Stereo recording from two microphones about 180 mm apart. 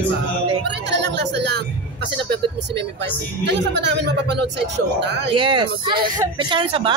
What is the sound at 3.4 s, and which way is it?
Speech, 75° right (ahead or behind).